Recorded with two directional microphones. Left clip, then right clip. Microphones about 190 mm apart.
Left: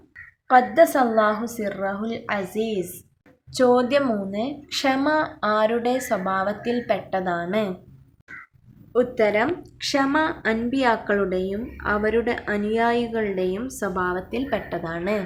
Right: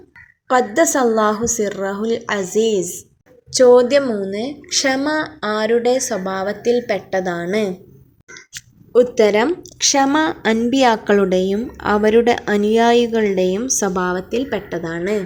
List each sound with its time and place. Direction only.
0.4 s a woman's voice: 20° right (ahead or behind)
8.9 s a woman's voice: 35° right (ahead or behind); by 15.2 s 20° right (ahead or behind)